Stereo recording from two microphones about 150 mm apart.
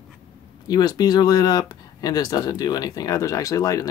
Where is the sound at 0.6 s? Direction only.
25° left (ahead or behind).